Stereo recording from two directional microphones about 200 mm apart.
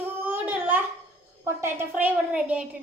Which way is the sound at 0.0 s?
10° right (ahead or behind).